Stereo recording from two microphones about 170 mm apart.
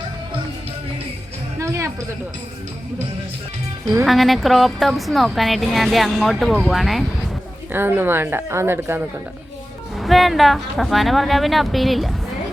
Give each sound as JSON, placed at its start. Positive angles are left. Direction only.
{"t": 1.5, "sound": "music", "side_deg": -20}
{"t": 4.0, "sound": "speech", "side_deg": 0}
{"t": 7.7, "sound": "speech", "side_deg": -10}
{"t": 10.0, "sound": "speech", "side_deg": 0}